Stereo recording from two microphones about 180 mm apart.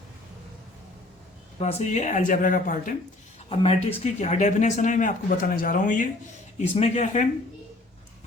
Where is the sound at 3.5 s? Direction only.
35° left (ahead or behind).